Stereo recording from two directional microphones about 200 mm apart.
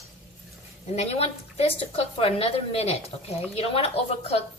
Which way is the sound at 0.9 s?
30° left (ahead or behind).